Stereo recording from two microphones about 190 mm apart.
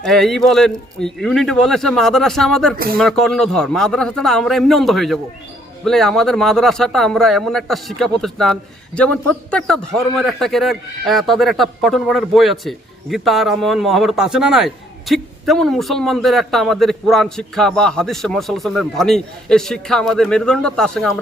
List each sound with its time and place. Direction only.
0.0 s a man's voice: centre (ahead or behind)
2.7 s speech: 50° right (ahead or behind)
3.0 s a man's voice: centre (ahead or behind)